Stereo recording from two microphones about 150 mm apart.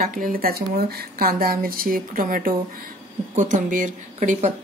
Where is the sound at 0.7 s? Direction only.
90° right; by 2.5 s 70° right (ahead or behind).